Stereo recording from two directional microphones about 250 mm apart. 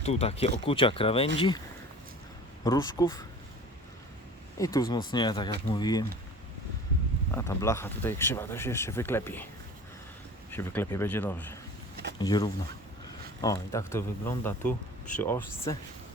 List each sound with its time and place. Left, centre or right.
0.0 s speech: left
2.6 s speech: centre
4.5 s speech: centre
7.3 s speech: centre
10.5 s speech: centre